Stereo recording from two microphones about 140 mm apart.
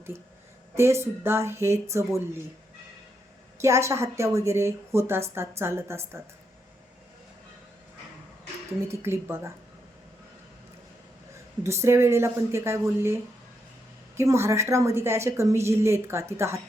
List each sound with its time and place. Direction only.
0.8 s a woman's voice: 20° right (ahead or behind)
3.6 s a woman's voice: 20° right (ahead or behind)
8.9 s a woman's voice: 20° right (ahead or behind)
11.6 s a woman's voice: 20° right (ahead or behind)
14.2 s a woman's voice: 20° right (ahead or behind)